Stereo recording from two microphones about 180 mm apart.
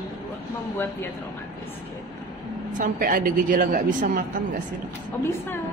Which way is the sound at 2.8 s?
50° right (ahead or behind).